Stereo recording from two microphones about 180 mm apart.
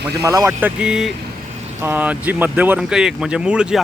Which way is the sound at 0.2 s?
15° right (ahead or behind).